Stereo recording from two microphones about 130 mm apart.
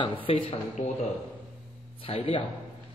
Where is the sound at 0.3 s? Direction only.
45° left (ahead or behind).